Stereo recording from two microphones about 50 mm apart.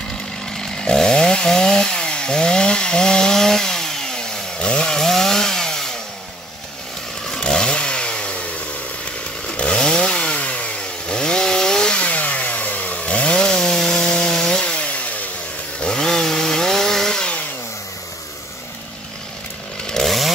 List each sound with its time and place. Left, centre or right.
0.5 s chainsaw: centre
7.2 s chainsaw: centre
9.6 s chainsaw: centre
12.0 s chainsaw: left
15.8 s chainsaw: centre
19.9 s chainsaw: centre